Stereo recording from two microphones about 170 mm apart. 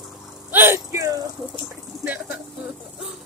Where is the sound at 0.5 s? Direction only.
15° right (ahead or behind).